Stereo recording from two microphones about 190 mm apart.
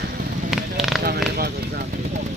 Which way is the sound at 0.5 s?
Centre (ahead or behind).